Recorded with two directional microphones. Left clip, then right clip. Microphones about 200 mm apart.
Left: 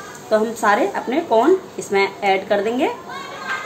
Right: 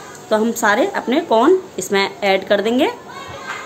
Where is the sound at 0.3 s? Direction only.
40° right (ahead or behind).